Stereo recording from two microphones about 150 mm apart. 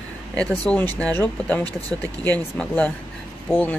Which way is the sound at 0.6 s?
10° left (ahead or behind).